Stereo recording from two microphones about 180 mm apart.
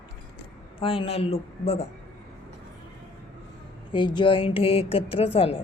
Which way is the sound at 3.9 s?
25° left (ahead or behind).